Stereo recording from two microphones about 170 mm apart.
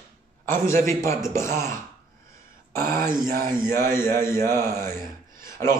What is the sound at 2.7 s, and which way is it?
A man's voice, 15° left (ahead or behind).